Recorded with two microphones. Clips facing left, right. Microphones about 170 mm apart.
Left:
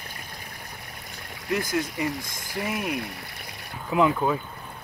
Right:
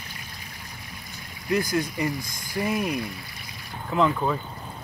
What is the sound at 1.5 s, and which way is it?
Speech, centre (ahead or behind).